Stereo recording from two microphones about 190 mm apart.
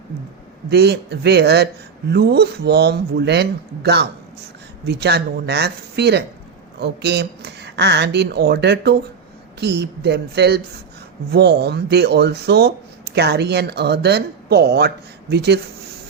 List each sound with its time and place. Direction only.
0.7 s speech: 60° right (ahead or behind)